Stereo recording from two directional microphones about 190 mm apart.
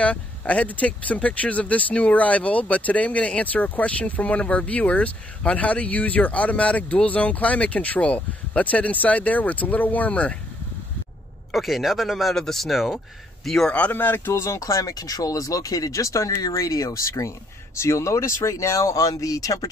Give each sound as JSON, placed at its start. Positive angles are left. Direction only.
{"t": 0.0, "sound": "speech", "side_deg": 5}
{"t": 11.5, "sound": "speech", "side_deg": 0}